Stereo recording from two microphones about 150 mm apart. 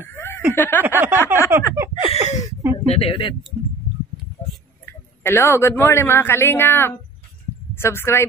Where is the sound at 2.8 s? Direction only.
40° left (ahead or behind).